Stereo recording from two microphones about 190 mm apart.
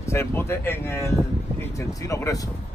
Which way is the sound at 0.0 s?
15° left (ahead or behind).